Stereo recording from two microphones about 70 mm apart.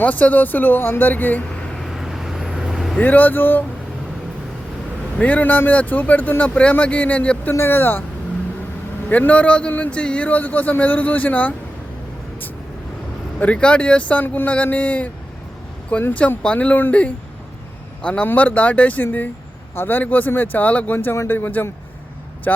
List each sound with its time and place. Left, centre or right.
0.0 s a man's voice: left
1.8 s vehicle: centre
3.0 s a man's voice: left
5.1 s a man's voice: left
7.5 s speech: left
9.0 s a man's voice: left
13.4 s a man's voice: centre